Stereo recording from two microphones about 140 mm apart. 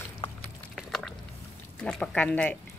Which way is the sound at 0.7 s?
Centre (ahead or behind).